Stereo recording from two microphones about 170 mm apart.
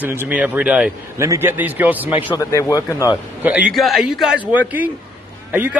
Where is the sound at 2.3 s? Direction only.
20° left (ahead or behind).